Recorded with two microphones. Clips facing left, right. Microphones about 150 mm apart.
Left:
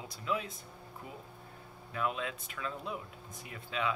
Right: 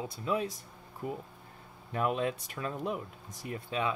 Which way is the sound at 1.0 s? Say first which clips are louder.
Right 13 dB; 50° right (ahead or behind).